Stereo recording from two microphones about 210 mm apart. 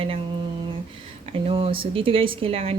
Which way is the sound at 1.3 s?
30° right (ahead or behind).